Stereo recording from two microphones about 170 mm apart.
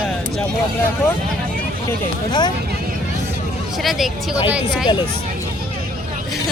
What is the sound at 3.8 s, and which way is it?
Speech, centre (ahead or behind).